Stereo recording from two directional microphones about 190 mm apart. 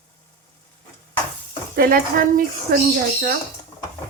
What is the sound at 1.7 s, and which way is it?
Speech, 50° right (ahead or behind).